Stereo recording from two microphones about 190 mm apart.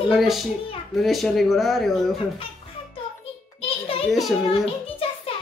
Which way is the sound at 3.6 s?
30° left (ahead or behind).